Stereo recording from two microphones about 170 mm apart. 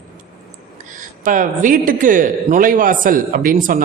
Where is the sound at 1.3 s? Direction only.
50° right (ahead or behind).